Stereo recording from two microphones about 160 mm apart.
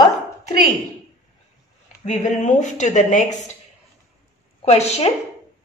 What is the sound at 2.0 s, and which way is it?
Speech, 50° left (ahead or behind).